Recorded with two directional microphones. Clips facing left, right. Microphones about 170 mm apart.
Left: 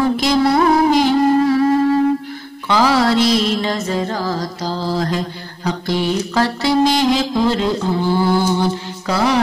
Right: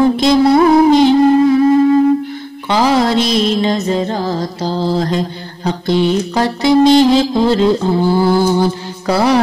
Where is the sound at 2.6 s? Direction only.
20° right (ahead or behind).